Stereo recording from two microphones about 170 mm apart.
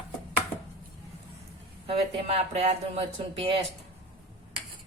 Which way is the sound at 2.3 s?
40° right (ahead or behind).